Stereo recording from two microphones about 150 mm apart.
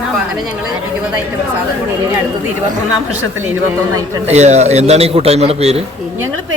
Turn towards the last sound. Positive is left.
turn(degrees=-45)  # may be behind; listen again after turning